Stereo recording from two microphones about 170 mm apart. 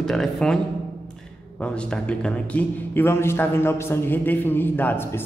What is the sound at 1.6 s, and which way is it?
A man's voice, 5° left (ahead or behind).